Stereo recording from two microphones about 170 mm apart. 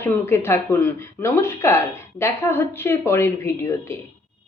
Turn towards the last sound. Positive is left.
turn(degrees=15)  # may be behind; listen again after turning